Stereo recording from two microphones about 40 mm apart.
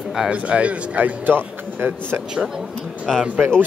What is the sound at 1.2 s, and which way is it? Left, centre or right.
A man's voice, right.